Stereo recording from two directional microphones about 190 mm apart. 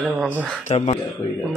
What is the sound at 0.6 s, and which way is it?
Speech, 40° left (ahead or behind).